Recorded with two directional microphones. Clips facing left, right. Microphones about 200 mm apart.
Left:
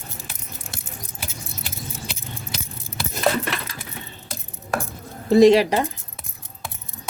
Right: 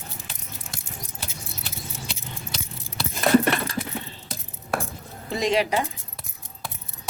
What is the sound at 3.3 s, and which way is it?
Keys jangling, 45° right (ahead or behind).